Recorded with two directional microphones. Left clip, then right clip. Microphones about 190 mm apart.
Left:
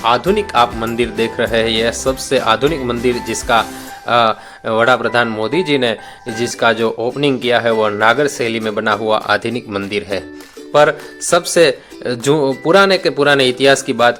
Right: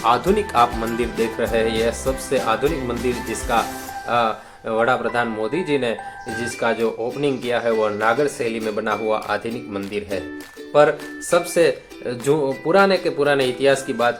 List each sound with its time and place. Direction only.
0.0 s speech: 15° left (ahead or behind); by 14.2 s 35° left (ahead or behind)